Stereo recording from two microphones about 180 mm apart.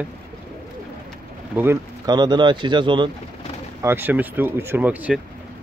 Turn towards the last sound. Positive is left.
turn(degrees=-10)  # may be behind; listen again after turning